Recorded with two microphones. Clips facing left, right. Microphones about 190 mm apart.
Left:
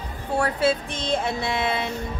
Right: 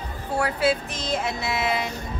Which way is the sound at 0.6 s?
30° left (ahead or behind).